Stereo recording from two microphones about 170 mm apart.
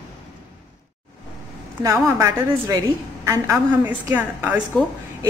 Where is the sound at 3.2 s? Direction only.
15° right (ahead or behind).